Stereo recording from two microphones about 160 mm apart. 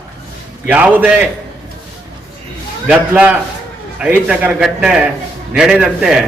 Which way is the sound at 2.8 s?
10° right (ahead or behind).